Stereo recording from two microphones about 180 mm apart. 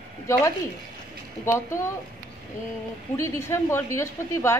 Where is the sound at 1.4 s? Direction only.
15° left (ahead or behind).